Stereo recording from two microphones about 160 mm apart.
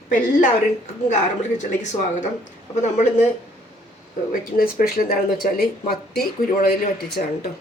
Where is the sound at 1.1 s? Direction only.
50° left (ahead or behind).